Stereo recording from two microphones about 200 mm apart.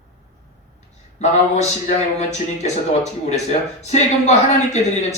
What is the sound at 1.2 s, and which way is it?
Speech, 35° left (ahead or behind).